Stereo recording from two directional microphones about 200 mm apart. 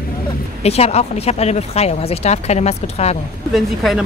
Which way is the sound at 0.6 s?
30° left (ahead or behind).